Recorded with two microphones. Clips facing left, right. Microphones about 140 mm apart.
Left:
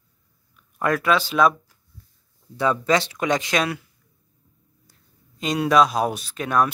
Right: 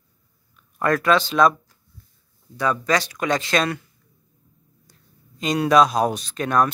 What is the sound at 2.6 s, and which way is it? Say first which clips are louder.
Speech: left 1 dB; 25° left (ahead or behind).